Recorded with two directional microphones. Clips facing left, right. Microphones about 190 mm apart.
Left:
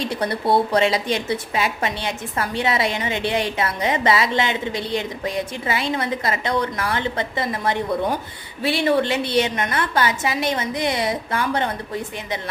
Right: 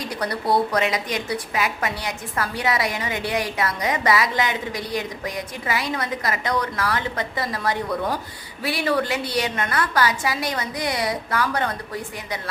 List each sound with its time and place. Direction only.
0.0 s a woman's voice: 25° left (ahead or behind)